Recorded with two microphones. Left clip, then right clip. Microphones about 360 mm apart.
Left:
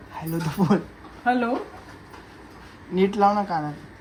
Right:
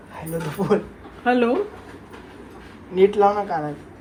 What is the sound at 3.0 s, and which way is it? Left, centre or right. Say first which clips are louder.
Speech: right 3 dB; left.